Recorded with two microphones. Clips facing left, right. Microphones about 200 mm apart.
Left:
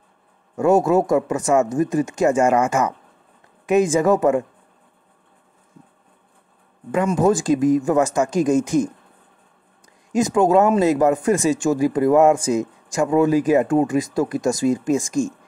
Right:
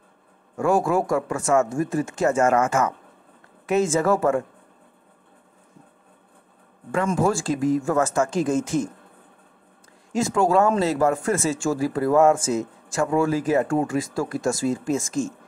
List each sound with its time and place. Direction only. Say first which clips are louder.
0.6 s speech: left 5 dB; 20° left (ahead or behind)
6.9 s speech: left 4 dB; 20° left (ahead or behind)
10.1 s speech: left 4 dB; 20° left (ahead or behind)